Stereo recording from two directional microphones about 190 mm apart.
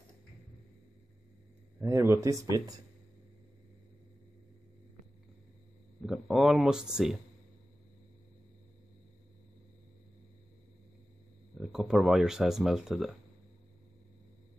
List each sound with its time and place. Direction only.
1.8 s speech: 15° right (ahead or behind)
6.0 s speech: centre (ahead or behind)
11.6 s speech: centre (ahead or behind)